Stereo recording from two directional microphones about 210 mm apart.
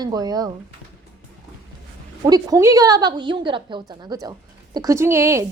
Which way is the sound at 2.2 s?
15° right (ahead or behind).